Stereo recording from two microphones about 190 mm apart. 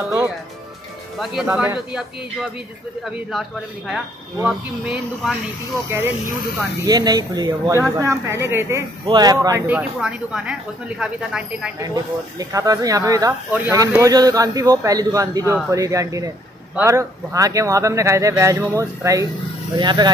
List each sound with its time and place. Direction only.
1.2 s speech: 5° right (ahead or behind)
3.1 s speech: centre (ahead or behind)
4.5 s speech: centre (ahead or behind)
6.9 s speech: 20° right (ahead or behind)
9.7 s speech: 5° right (ahead or behind)
11.8 s speech: 20° right (ahead or behind)